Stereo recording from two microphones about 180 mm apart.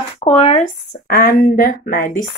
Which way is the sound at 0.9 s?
55° left (ahead or behind).